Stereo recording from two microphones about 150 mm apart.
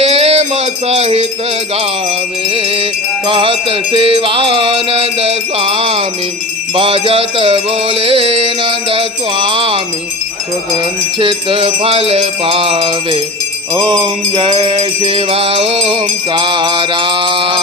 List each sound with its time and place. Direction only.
0.0 s music: 45° right (ahead or behind)